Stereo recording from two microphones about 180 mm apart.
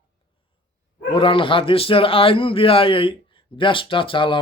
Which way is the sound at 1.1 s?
30° left (ahead or behind).